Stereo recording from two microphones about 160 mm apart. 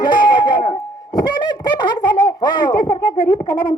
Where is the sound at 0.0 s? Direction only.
30° left (ahead or behind).